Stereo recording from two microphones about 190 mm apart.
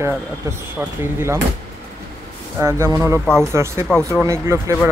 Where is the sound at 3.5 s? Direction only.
15° right (ahead or behind).